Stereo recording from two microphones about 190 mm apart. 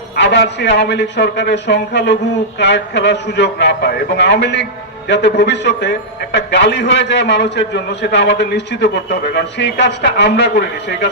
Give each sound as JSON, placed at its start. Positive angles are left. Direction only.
{"t": 0.2, "sound": "a man's voice", "side_deg": 65}